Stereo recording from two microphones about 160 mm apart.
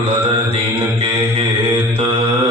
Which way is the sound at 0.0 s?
35° right (ahead or behind).